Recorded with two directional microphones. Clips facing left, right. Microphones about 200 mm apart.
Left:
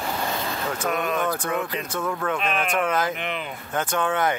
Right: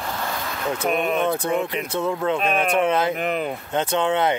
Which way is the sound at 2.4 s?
35° right (ahead or behind).